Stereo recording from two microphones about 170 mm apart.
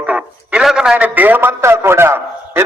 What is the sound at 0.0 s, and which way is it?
A man's voice, 5° right (ahead or behind).